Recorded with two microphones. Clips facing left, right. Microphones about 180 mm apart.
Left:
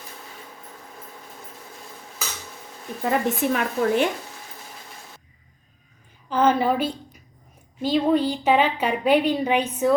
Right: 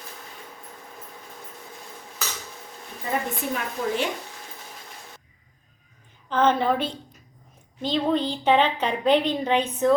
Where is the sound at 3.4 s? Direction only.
75° left (ahead or behind).